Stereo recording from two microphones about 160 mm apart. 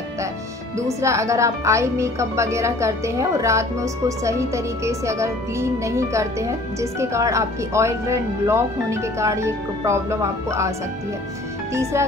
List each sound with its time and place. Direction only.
0.7 s speech: 20° right (ahead or behind)
11.7 s speech: 15° right (ahead or behind)